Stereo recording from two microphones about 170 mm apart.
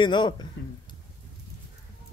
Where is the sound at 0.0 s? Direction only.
25° left (ahead or behind).